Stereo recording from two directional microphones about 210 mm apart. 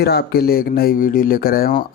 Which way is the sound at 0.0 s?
50° left (ahead or behind).